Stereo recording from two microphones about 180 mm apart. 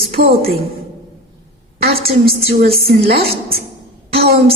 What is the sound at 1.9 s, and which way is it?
A woman's voice, 35° right (ahead or behind).